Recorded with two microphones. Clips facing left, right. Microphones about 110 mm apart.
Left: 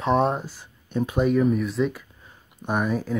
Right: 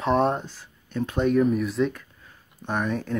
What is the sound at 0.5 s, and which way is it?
Speech, 15° left (ahead or behind).